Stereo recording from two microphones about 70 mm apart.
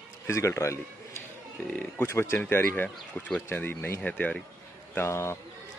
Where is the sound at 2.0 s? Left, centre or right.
Left.